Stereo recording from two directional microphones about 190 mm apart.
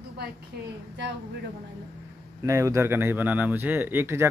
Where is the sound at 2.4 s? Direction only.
15° right (ahead or behind).